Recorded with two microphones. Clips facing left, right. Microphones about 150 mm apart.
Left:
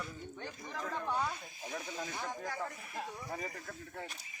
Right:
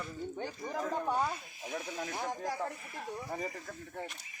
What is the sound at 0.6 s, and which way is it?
Speech, 20° right (ahead or behind).